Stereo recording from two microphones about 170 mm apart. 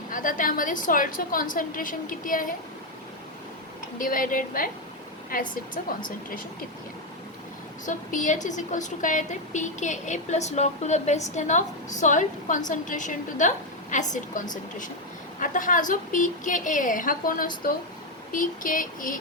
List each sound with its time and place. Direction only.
0.1 s a woman's voice: 55° left (ahead or behind)
3.9 s a woman's voice: 55° left (ahead or behind)
7.9 s a woman's voice: 50° left (ahead or behind)